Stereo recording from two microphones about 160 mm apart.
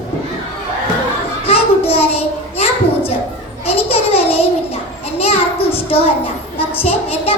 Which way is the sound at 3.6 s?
40° left (ahead or behind).